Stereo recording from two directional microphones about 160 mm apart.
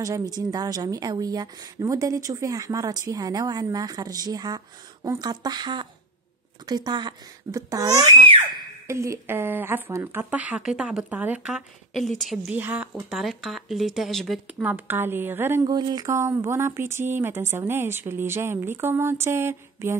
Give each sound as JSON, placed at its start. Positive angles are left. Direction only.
{"t": 0.0, "sound": "a woman's voice", "side_deg": -20}
{"t": 12.5, "sound": "speech", "side_deg": -10}
{"t": 15.6, "sound": "speech", "side_deg": -25}